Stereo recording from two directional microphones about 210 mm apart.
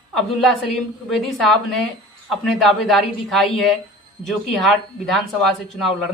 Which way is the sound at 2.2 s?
Centre (ahead or behind).